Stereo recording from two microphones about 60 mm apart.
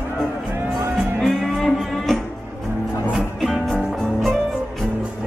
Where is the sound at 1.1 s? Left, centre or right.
Centre.